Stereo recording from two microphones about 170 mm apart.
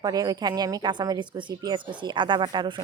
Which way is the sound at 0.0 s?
20° right (ahead or behind).